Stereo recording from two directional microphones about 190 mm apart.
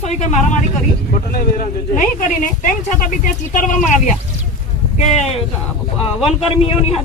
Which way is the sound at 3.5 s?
40° left (ahead or behind).